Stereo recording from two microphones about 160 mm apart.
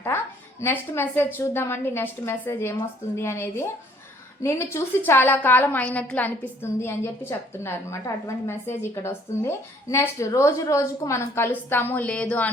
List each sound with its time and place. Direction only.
0.6 s a woman's voice: 15° left (ahead or behind)